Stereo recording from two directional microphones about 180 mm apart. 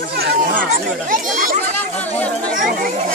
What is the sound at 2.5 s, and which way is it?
Chatter, 50° right (ahead or behind).